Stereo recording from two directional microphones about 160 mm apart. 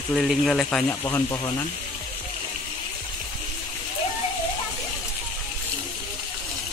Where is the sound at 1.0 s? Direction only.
20° left (ahead or behind).